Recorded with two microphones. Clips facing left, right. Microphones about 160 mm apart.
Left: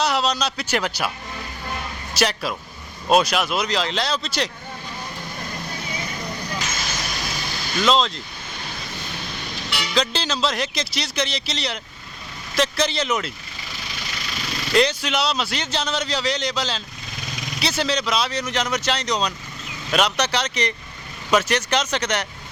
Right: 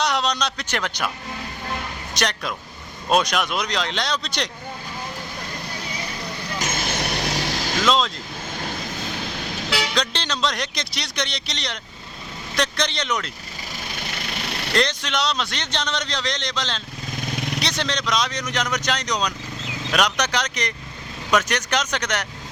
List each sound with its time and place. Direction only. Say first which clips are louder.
0.0 s a man's voice: left 1 dB; 5° left (ahead or behind)
2.1 s a man's voice: left 3 dB; 5° left (ahead or behind)
6.6 s vehicle: right 3 dB; 55° right (ahead or behind); by 7.8 s 90° right
7.8 s a man's voice: left 2 dB; centre (ahead or behind)
9.9 s a man's voice: left 2 dB; 5° left (ahead or behind)
13.7 s vehicle: right 2 dB; 50° right (ahead or behind)
14.8 s a man's voice: left 3 dB; 5° left (ahead or behind)
17.3 s vehicle: right 6 dB; 60° right (ahead or behind)
17.6 s a man's voice: left 7 dB; 5° left (ahead or behind)